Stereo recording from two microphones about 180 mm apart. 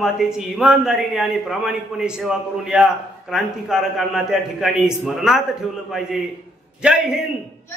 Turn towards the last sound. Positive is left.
turn(degrees=-5)  # may be behind; listen again after turning